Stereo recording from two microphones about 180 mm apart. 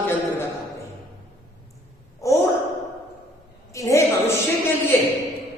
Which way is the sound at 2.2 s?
15° left (ahead or behind).